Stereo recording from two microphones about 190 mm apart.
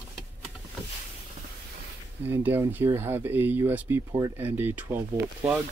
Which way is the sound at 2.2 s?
10° right (ahead or behind).